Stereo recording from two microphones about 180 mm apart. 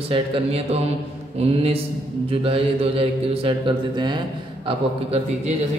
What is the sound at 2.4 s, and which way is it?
A man's voice, 30° right (ahead or behind).